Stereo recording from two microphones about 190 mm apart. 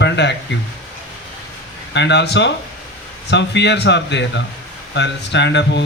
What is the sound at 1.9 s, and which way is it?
Speech, 65° left (ahead or behind).